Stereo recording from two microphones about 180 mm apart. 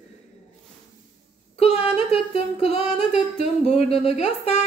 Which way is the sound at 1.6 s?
35° left (ahead or behind).